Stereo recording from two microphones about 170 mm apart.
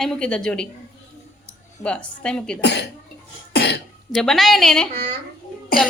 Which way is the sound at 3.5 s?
80° left.